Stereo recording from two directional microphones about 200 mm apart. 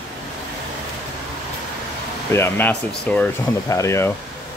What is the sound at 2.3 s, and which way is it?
Speech, 10° left (ahead or behind).